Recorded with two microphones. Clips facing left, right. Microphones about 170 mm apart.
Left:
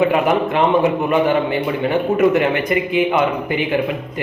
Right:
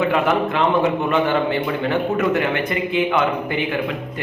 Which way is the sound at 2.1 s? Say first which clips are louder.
Left 8 dB; 15° left (ahead or behind).